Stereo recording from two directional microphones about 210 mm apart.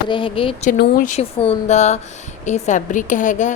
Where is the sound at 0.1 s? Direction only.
25° left (ahead or behind).